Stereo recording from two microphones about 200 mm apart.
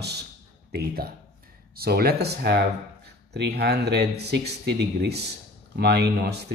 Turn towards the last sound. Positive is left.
turn(degrees=-55)  # may be behind; listen again after turning